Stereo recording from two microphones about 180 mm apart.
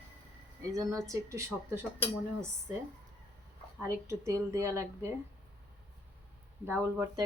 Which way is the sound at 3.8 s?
15° right (ahead or behind).